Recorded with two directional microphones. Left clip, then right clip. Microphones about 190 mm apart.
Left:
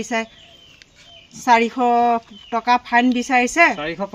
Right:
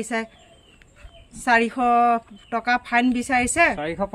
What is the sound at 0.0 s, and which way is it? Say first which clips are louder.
Speech: left 4 dB; 40° right (ahead or behind).